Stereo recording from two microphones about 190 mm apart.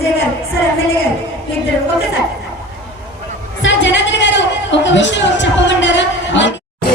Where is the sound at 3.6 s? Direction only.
70° left (ahead or behind).